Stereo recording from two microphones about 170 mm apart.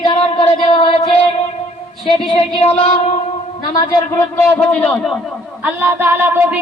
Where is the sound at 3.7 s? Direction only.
20° left (ahead or behind).